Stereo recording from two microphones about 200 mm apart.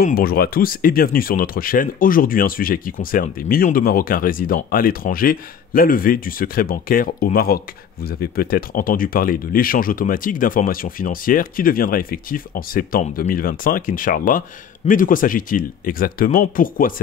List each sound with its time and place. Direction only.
0.0 s speech: 50° left (ahead or behind)